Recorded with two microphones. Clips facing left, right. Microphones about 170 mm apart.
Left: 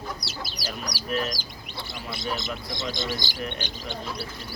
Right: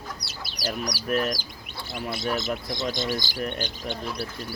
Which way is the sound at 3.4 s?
45° right (ahead or behind).